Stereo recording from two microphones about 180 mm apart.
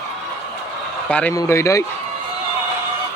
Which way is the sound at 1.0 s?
10° left (ahead or behind).